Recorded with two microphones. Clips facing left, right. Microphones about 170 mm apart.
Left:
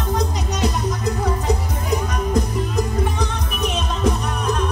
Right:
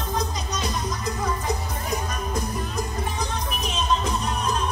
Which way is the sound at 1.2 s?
65° left (ahead or behind).